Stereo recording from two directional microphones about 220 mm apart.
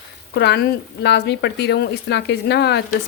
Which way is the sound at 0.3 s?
50° left (ahead or behind).